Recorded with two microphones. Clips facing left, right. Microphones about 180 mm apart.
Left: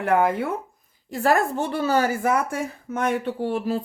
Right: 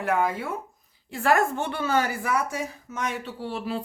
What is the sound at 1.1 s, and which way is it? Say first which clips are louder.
Speech: left 2 dB; 40° left (ahead or behind).